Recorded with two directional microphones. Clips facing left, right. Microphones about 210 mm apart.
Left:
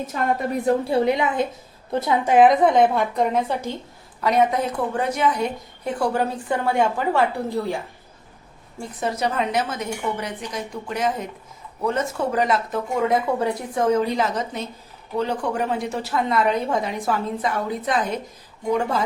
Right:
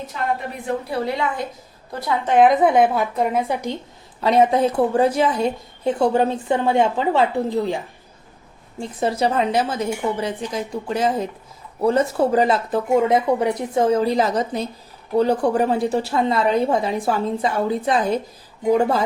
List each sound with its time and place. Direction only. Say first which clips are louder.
0.1 s a woman's voice: left 2 dB; 45° left (ahead or behind)
0.9 s a woman's voice: left 3 dB; 20° left (ahead or behind)
2.2 s a woman's voice: right 1 dB; 5° left (ahead or behind); by 3.8 s 15° right (ahead or behind)
4.2 s a woman's voice: right 4 dB; 30° right (ahead or behind)
8.8 s a woman's voice: right 4 dB; 30° right (ahead or behind)